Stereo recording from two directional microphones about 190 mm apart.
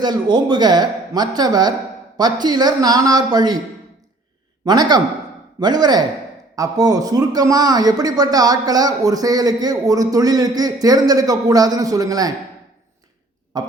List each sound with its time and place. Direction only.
0.0 s speech: 20° right (ahead or behind)
4.6 s speech: 20° right (ahead or behind)
13.5 s speech: 20° right (ahead or behind)